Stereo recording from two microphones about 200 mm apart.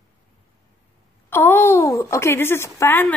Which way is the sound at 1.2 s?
10° left (ahead or behind).